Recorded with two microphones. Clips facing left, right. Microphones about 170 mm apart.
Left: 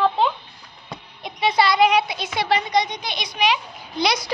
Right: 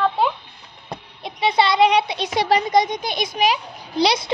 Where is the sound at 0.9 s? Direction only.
30° right (ahead or behind).